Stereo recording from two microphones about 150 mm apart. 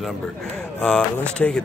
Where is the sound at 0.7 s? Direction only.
5° left (ahead or behind).